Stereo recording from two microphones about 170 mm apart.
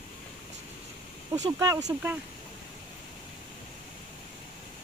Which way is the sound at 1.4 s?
20° right (ahead or behind).